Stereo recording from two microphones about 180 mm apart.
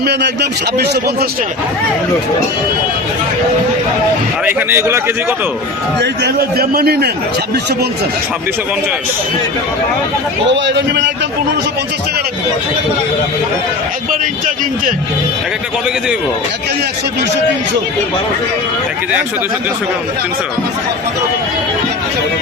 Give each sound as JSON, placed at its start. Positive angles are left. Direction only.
{"t": 0.0, "sound": "a man's voice", "side_deg": -70}
{"t": 4.4, "sound": "speech", "side_deg": -15}
{"t": 6.0, "sound": "a man's voice", "side_deg": -65}
{"t": 10.5, "sound": "a man's voice", "side_deg": -80}